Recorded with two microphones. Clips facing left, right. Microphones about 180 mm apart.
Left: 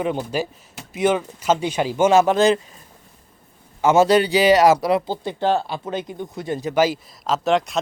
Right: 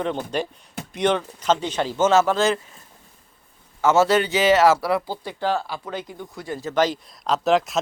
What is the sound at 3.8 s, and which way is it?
Speech, 15° left (ahead or behind).